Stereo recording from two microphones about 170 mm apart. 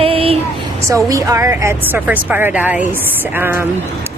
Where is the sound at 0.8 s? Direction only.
20° right (ahead or behind).